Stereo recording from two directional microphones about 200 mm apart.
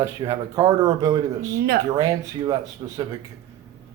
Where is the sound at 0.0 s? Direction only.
15° right (ahead or behind).